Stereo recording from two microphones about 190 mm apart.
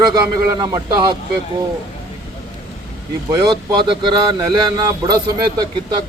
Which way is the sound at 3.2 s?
20° right (ahead or behind).